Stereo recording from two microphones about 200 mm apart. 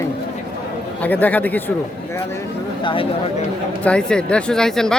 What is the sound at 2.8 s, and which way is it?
Speech, 25° left (ahead or behind).